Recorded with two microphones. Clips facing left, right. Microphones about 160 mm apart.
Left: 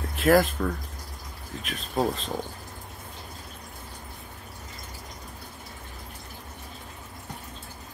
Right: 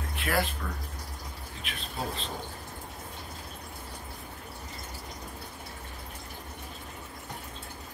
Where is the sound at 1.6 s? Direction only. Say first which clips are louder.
Left 10 dB; 40° left (ahead or behind).